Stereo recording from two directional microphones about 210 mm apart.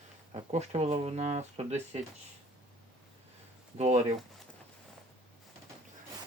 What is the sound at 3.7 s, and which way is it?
Speech, 30° right (ahead or behind).